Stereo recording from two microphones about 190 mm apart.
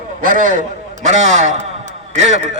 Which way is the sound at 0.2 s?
45° right (ahead or behind).